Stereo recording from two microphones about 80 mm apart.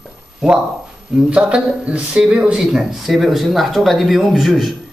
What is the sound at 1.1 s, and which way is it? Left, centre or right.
A man's voice, centre.